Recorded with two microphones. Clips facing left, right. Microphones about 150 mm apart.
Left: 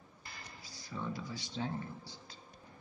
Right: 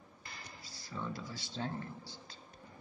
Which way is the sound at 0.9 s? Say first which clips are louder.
Left 1 dB; 15° left (ahead or behind).